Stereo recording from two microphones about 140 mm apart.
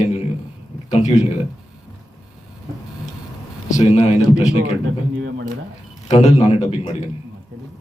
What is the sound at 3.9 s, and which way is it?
Speech, 55° left (ahead or behind).